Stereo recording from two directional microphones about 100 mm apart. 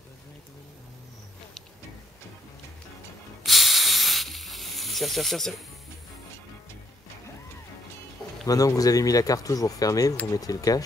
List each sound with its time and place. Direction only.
3.4 s snake: centre (ahead or behind)
8.5 s speech: 35° left (ahead or behind)